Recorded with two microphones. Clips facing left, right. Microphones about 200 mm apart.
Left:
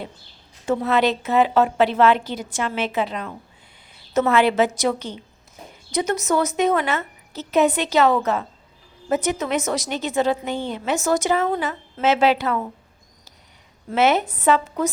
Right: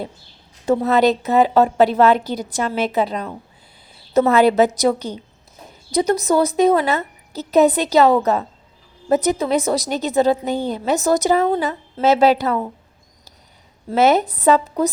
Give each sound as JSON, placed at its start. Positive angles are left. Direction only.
{"t": 0.6, "sound": "a woman's voice", "side_deg": -35}
{"t": 13.9, "sound": "a woman's voice", "side_deg": -40}